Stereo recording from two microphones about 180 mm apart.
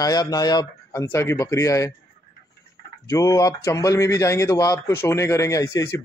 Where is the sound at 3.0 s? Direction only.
20° left (ahead or behind).